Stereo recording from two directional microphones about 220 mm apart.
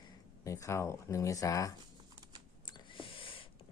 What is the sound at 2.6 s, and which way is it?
Owl, 20° left (ahead or behind).